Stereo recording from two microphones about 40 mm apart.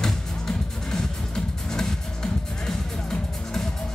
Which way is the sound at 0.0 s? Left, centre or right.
Centre.